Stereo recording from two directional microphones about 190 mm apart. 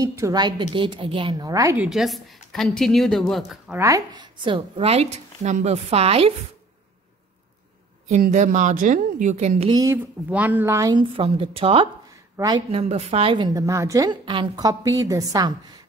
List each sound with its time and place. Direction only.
0.0 s a woman's voice: 15° right (ahead or behind)
1.9 s a woman's voice: centre (ahead or behind)
3.7 s a woman's voice: 15° right (ahead or behind); by 6.3 s 30° right (ahead or behind)
8.1 s a woman's voice: 40° right (ahead or behind)
9.7 s a woman's voice: 20° right (ahead or behind)
10.3 s a woman's voice: 10° right (ahead or behind)
12.7 s a woman's voice: 30° right (ahead or behind)